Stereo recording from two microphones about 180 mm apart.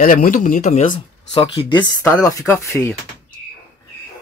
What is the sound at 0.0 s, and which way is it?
Speech, 50° left (ahead or behind).